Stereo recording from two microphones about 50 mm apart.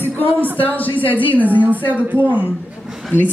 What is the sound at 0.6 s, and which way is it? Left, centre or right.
A woman's voice, left.